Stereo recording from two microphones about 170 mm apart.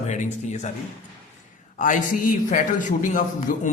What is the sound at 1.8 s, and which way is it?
A man's voice, 50° left (ahead or behind).